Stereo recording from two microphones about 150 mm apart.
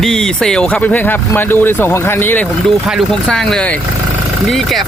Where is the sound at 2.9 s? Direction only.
Centre (ahead or behind).